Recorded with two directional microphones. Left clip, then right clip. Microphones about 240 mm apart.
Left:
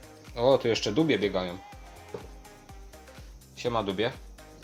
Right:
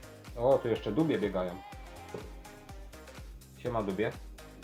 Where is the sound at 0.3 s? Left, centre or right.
Left.